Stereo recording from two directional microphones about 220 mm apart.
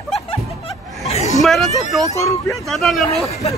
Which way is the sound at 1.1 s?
30° left (ahead or behind).